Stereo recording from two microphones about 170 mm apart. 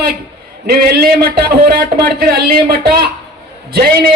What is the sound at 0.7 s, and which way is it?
A man's voice, 65° right (ahead or behind).